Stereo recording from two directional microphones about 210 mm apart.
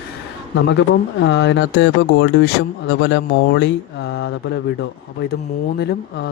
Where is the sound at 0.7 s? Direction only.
60° left (ahead or behind).